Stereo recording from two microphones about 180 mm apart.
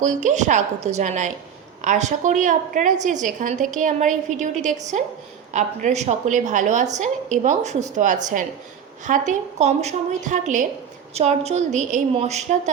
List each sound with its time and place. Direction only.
0.0 s a woman's voice: 45° right (ahead or behind)